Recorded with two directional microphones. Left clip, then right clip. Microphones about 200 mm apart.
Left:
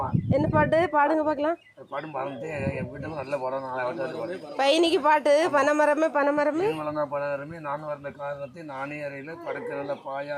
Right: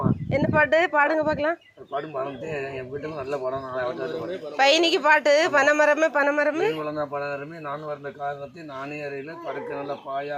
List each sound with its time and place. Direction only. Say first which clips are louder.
0.3 s a man's voice: right 2 dB; 15° left (ahead or behind)
3.2 s a man's voice: even; 15° left (ahead or behind)